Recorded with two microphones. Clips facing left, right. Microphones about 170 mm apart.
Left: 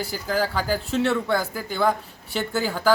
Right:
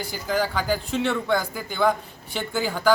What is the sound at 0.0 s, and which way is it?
Speech, 5° left (ahead or behind).